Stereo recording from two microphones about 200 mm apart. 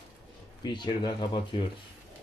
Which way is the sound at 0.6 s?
25° left (ahead or behind).